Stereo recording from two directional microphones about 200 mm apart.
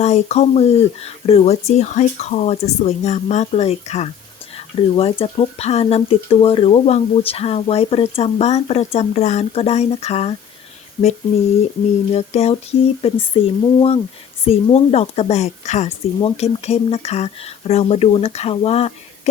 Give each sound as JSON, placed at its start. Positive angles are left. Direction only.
{"t": 0.0, "sound": "speech", "side_deg": 35}
{"t": 12.1, "sound": "speech", "side_deg": 30}